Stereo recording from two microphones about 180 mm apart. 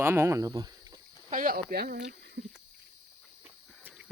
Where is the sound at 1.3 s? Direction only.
50° right (ahead or behind).